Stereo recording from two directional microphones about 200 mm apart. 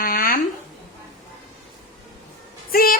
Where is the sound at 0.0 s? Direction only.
45° left (ahead or behind).